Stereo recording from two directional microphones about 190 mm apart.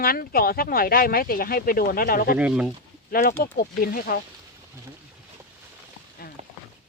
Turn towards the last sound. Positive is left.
turn(degrees=50)  # may be behind; listen again after turning